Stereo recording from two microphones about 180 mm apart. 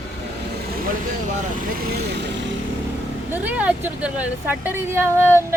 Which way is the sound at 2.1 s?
75° right (ahead or behind).